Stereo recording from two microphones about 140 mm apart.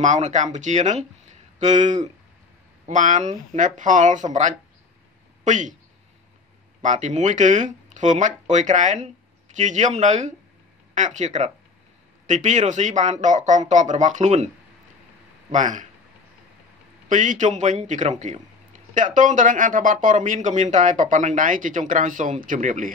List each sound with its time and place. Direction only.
0.0 s speech: 60° right (ahead or behind)
6.8 s speech: 60° right (ahead or behind)
15.5 s speech: 65° right (ahead or behind)
17.1 s speech: 60° right (ahead or behind)